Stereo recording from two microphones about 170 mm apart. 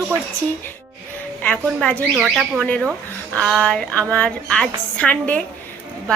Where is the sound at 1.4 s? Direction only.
5° left (ahead or behind).